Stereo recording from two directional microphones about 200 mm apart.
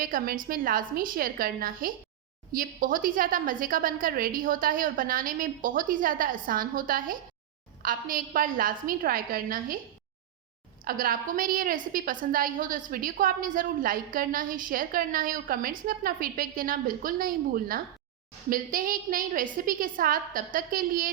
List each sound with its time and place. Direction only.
0.0 s a woman's voice: 45° right (ahead or behind)
10.8 s a woman's voice: 45° right (ahead or behind)